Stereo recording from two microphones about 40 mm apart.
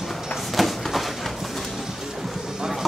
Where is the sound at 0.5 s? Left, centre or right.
Centre.